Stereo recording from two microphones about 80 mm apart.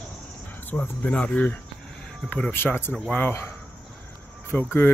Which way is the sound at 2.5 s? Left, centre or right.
Left.